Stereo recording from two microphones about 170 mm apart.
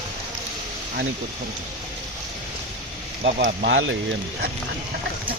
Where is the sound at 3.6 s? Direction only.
90° right.